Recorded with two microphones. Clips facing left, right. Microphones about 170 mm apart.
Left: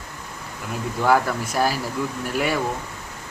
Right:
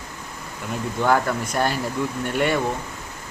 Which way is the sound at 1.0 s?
5° left (ahead or behind).